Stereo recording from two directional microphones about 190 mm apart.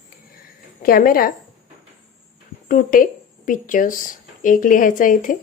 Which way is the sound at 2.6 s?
45° left (ahead or behind).